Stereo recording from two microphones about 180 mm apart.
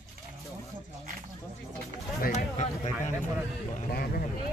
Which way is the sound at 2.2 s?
40° left (ahead or behind).